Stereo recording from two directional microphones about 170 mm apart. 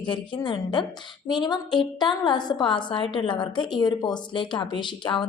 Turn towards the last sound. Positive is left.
turn(degrees=30)  # may be behind; listen again after turning